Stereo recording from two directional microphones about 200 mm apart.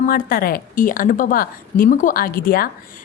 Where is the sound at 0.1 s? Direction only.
45° left (ahead or behind).